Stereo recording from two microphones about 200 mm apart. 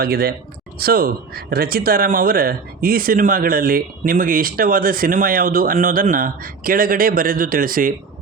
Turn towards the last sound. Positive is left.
turn(degrees=-45)  # may be behind; listen again after turning